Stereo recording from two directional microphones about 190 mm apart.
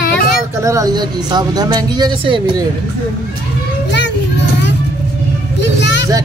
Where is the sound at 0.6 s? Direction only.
15° right (ahead or behind).